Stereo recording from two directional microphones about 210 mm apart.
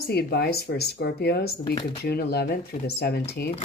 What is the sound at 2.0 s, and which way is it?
Speech, 50° left (ahead or behind).